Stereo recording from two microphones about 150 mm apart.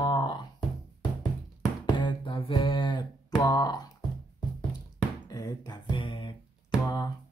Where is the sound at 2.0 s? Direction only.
30° left (ahead or behind).